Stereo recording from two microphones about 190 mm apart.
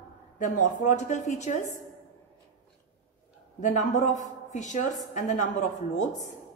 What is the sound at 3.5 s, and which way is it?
A woman's voice, 40° left (ahead or behind).